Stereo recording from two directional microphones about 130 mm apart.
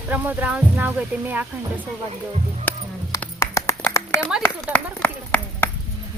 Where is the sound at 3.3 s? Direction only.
20° left (ahead or behind).